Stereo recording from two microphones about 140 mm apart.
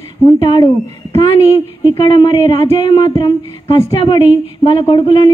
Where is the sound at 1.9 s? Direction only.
40° left (ahead or behind).